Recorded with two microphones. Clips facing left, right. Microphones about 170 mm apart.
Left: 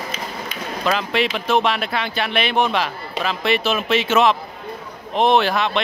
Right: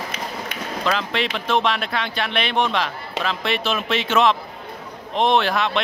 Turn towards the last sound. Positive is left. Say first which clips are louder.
# left 2 dB
turn(degrees=0)  # may be behind; listen again after turning